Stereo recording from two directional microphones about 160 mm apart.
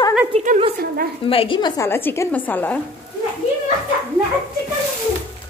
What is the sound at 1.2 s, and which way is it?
Speech, 35° left (ahead or behind).